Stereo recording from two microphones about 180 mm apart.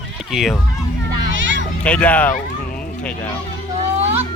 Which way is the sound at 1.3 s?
90° right.